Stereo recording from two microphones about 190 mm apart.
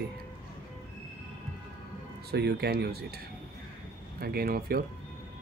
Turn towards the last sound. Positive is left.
turn(degrees=-50)  # may be behind; listen again after turning